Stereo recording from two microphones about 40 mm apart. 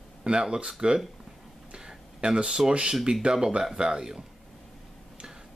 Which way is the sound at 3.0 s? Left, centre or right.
Centre.